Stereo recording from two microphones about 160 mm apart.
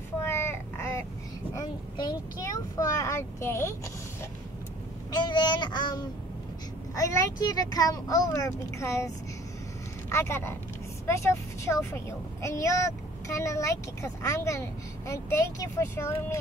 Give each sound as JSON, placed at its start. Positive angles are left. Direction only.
{"t": 0.2, "sound": "a sound", "side_deg": 15}
{"t": 1.5, "sound": "vehicle", "side_deg": 25}
{"t": 5.1, "sound": "speech", "side_deg": 25}